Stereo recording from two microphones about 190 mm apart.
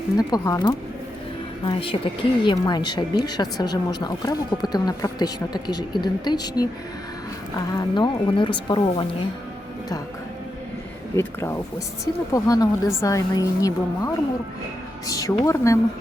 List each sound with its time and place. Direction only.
0.2 s speech: 20° left (ahead or behind)
7.7 s speech: 20° left (ahead or behind)
11.2 s a woman's voice: 15° left (ahead or behind)